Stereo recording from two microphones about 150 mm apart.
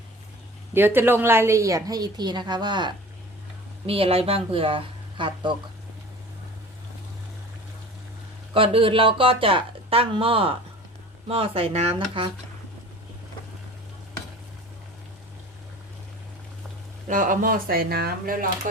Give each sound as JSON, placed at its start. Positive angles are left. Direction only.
{"t": 0.7, "sound": "a woman's voice", "side_deg": -15}
{"t": 8.5, "sound": "speech", "side_deg": -35}
{"t": 17.1, "sound": "speech", "side_deg": -65}